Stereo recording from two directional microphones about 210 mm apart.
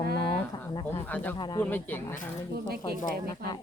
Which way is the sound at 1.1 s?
10° left (ahead or behind).